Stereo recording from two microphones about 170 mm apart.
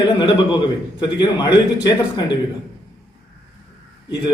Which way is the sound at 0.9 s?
25° left (ahead or behind).